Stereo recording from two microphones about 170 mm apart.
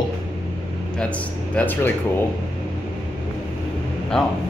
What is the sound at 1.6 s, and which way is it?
Speech, 10° left (ahead or behind).